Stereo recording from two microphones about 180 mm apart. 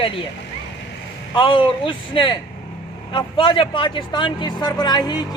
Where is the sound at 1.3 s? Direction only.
30° left (ahead or behind).